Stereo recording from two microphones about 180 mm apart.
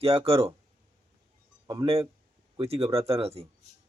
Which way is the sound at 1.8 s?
30° right (ahead or behind).